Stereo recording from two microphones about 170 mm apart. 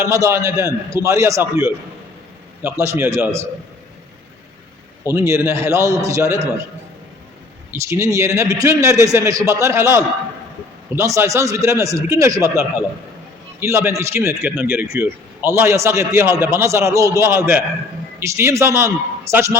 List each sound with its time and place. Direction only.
0.0 s a man's voice: 15° right (ahead or behind)
2.8 s a man's voice: 15° right (ahead or behind)
5.0 s a man's voice: 15° right (ahead or behind)
7.7 s a man's voice: 15° right (ahead or behind)